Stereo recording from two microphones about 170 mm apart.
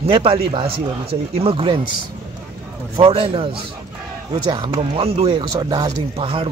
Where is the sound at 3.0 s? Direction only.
30° right (ahead or behind).